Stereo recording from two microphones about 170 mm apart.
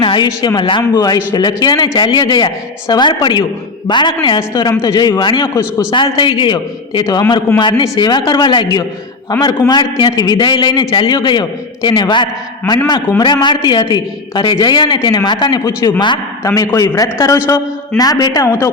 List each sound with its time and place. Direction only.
0.0 s speech: 30° left (ahead or behind)